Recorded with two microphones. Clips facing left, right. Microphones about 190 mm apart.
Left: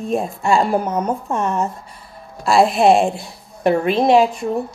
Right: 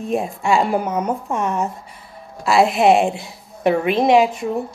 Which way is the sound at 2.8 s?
15° right (ahead or behind).